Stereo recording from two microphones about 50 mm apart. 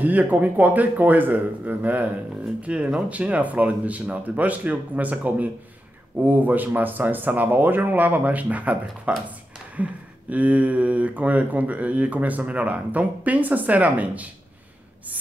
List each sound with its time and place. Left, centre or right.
0.0 s speech: right
2.6 s speech: right